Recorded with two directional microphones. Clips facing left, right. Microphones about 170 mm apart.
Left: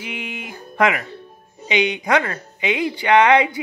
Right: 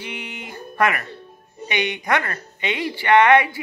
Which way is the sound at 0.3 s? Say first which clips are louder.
Left 1 dB; 15° left (ahead or behind).